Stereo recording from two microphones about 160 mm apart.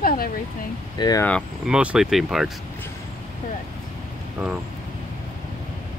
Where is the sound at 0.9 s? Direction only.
25° left (ahead or behind).